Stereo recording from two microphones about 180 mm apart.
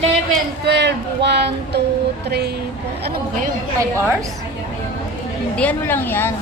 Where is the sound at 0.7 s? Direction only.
70° right (ahead or behind).